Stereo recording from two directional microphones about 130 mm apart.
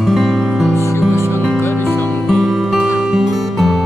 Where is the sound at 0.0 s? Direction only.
Centre (ahead or behind).